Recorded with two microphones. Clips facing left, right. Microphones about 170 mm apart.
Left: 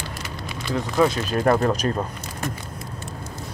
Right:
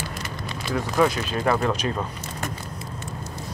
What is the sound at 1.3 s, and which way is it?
Speech, 45° left (ahead or behind).